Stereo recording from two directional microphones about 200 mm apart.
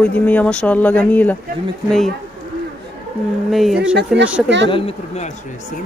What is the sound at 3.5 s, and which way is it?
Speech, centre (ahead or behind).